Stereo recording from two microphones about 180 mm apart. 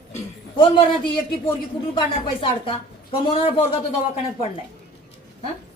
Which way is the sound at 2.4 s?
30° left (ahead or behind).